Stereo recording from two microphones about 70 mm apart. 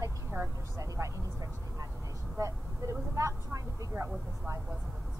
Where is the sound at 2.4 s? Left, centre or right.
Right.